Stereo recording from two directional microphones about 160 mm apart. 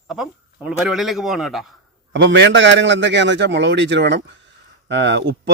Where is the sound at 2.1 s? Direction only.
90° right.